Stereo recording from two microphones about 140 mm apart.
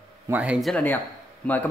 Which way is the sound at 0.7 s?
15° left (ahead or behind).